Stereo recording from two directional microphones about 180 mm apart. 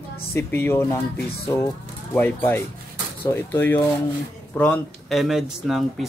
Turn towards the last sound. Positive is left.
turn(degrees=0)  # may be behind; listen again after turning